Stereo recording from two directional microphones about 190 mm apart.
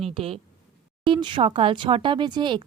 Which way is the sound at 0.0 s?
30° right (ahead or behind).